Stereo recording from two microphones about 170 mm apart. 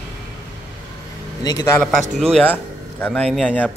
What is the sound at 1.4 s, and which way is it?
Speech, 25° left (ahead or behind).